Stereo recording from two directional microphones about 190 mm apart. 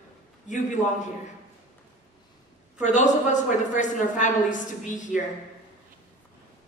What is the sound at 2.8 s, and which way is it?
A man's voice, 40° left (ahead or behind).